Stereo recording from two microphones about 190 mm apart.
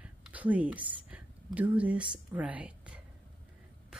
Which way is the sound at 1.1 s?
5° right (ahead or behind).